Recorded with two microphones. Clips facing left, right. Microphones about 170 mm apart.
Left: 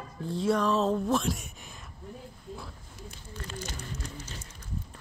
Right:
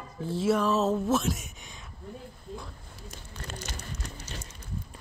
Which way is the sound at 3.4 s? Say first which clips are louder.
Left 1 dB; 70° right (ahead or behind).